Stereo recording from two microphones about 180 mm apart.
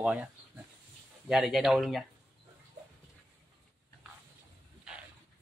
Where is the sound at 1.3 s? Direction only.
Centre (ahead or behind).